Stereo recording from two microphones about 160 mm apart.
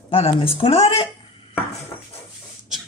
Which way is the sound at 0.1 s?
35° left (ahead or behind).